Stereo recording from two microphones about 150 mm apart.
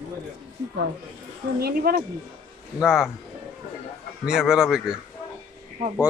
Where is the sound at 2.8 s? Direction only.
5° right (ahead or behind).